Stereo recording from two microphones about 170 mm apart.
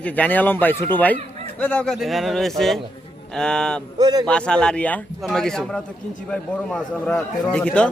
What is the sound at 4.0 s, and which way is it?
Speech, 25° right (ahead or behind).